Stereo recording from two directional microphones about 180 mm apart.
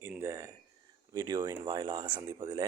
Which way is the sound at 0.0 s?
15° right (ahead or behind).